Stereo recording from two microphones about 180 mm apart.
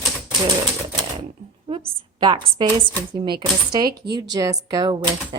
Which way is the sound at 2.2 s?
25° right (ahead or behind).